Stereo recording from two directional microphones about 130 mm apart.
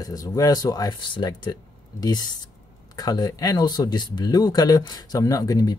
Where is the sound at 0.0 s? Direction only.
25° left (ahead or behind).